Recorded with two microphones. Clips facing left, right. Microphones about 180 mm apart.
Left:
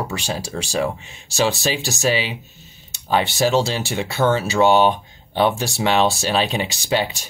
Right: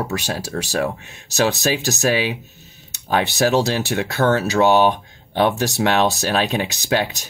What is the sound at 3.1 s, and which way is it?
Speech, 65° right (ahead or behind).